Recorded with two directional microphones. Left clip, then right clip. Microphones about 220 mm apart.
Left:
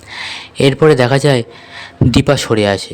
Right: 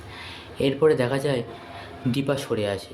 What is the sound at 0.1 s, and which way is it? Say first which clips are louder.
A man's voice: left 15 dB; 50° left (ahead or behind).